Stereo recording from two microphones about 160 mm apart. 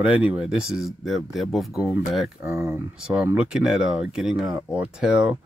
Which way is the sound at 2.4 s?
20° right (ahead or behind).